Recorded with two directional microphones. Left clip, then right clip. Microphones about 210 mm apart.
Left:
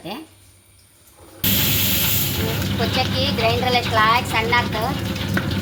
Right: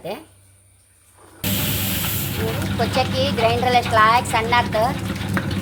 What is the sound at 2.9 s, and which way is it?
A woman's voice, 45° right (ahead or behind).